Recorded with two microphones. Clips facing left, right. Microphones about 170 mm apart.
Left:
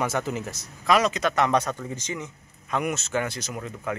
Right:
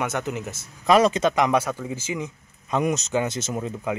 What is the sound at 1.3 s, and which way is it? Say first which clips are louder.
Speech: right 2 dB; 10° right (ahead or behind).